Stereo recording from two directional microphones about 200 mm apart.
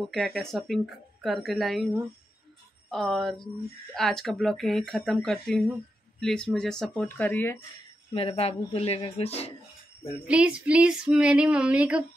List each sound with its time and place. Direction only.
0.1 s speech: centre (ahead or behind)
2.9 s speech: centre (ahead or behind)
8.1 s speech: 30° left (ahead or behind)
10.2 s speech: 5° right (ahead or behind)